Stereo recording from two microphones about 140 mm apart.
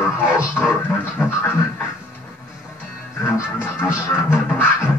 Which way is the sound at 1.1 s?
15° left (ahead or behind).